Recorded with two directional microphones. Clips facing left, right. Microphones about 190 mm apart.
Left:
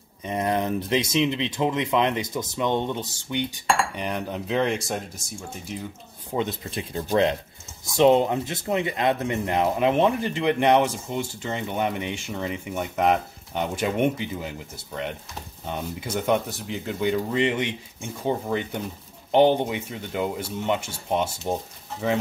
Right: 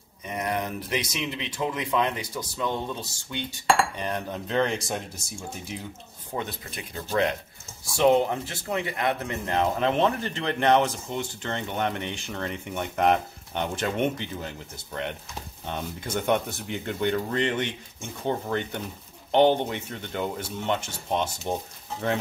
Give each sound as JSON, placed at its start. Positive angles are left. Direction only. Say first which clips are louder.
{"t": 0.2, "sound": "speech", "louder": "left 4 dB", "side_deg": 25}
{"t": 6.3, "sound": "speech", "louder": "left 6 dB", "side_deg": 25}
{"t": 8.0, "sound": "speech", "louder": "left 3 dB", "side_deg": 20}